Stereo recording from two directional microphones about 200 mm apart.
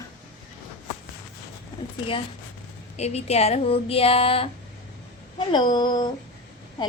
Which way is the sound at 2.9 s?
30° left (ahead or behind).